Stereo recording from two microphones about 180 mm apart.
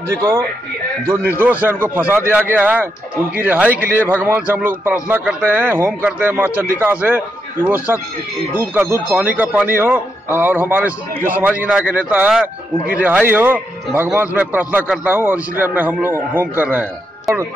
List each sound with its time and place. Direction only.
1.0 s a man's voice: 15° right (ahead or behind)